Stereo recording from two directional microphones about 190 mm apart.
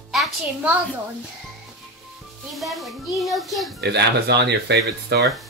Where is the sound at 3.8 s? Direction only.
60° right (ahead or behind).